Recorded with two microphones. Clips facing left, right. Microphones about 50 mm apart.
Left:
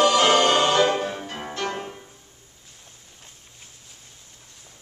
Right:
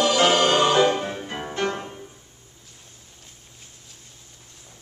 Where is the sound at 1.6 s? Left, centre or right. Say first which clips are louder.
Right 3 dB; right.